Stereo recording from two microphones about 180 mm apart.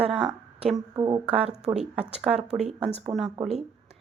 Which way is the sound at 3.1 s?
30° right (ahead or behind).